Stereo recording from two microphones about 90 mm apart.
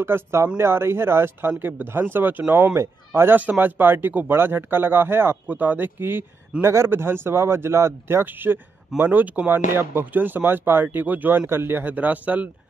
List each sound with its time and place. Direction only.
0.0 s speech: 30° right (ahead or behind)